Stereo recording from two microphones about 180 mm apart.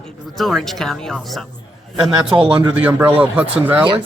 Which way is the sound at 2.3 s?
25° right (ahead or behind).